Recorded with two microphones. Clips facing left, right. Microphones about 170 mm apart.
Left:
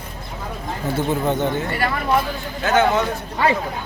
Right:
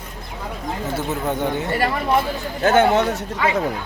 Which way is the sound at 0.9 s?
10° right (ahead or behind).